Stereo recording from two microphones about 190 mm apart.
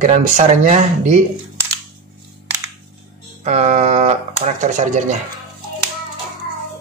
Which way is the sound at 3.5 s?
35° right (ahead or behind).